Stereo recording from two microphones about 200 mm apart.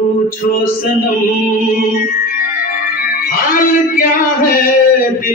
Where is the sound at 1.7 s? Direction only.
45° left (ahead or behind).